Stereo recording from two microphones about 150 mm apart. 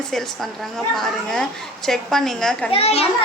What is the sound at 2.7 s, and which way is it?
Speech, 40° left (ahead or behind).